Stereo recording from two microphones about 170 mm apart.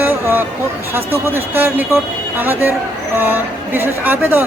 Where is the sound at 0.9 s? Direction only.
15° right (ahead or behind).